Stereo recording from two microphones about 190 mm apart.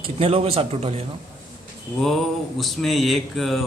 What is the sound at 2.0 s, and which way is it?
Speech, centre (ahead or behind).